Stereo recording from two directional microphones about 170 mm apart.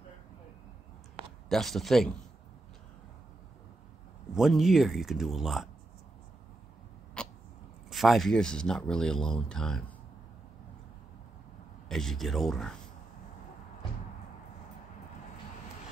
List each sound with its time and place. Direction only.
1.2 s a sound: 30° right (ahead or behind)
1.5 s speech: centre (ahead or behind)
4.4 s speech: centre (ahead or behind)
7.2 s a sound: 5° left (ahead or behind)
7.9 s speech: centre (ahead or behind)
11.9 s speech: centre (ahead or behind)